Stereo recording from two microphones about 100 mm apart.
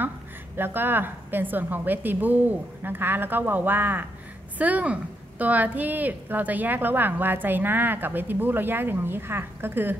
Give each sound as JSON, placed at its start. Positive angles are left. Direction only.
{"t": 0.6, "sound": "a woman's voice", "side_deg": -20}